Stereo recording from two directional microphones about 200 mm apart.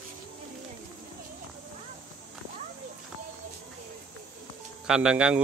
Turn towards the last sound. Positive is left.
turn(degrees=-5)  # may be behind; listen again after turning